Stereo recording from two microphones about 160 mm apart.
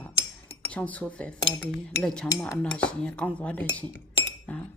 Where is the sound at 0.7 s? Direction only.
10° left (ahead or behind).